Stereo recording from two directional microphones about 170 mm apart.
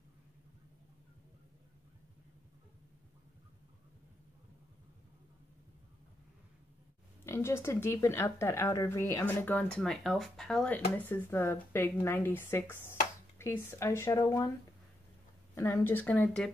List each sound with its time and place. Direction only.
7.2 s speech: 15° left (ahead or behind)
15.5 s speech: 15° left (ahead or behind)